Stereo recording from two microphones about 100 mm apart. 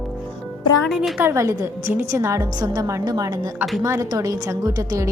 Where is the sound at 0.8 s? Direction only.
Centre (ahead or behind).